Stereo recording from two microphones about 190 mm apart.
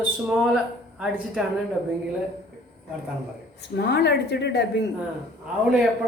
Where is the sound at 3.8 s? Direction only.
65° left (ahead or behind).